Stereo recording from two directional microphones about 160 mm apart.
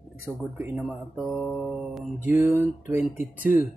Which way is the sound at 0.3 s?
10° right (ahead or behind).